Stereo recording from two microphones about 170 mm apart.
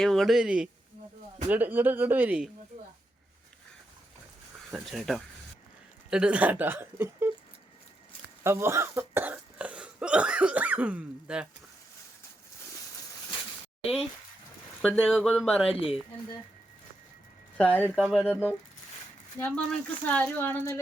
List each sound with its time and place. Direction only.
0.0 s speech: centre (ahead or behind)
4.7 s speech: centre (ahead or behind)
8.4 s speech: 15° right (ahead or behind)
14.8 s speech: 5° left (ahead or behind)
15.7 s speech: 35° left (ahead or behind)
17.6 s speech: 10° left (ahead or behind)